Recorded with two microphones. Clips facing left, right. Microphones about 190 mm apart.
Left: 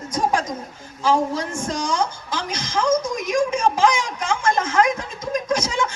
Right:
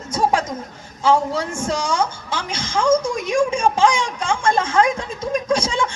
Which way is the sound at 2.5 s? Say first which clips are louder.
Right 3 dB; 30° right (ahead or behind).